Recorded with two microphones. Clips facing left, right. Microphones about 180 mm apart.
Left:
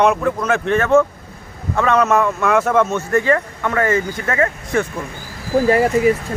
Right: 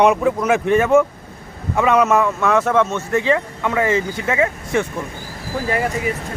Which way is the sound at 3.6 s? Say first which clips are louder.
Even; 10° right (ahead or behind).